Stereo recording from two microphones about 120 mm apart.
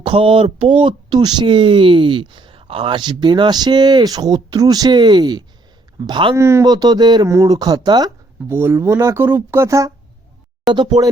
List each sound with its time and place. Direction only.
0.0 s speech: 45° right (ahead or behind)
6.3 s speech: 25° right (ahead or behind)
6.7 s speech: 35° right (ahead or behind)
8.4 s speech: 20° right (ahead or behind)